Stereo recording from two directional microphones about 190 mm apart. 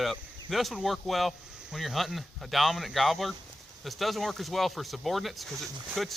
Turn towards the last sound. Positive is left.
turn(degrees=0)  # may be behind; listen again after turning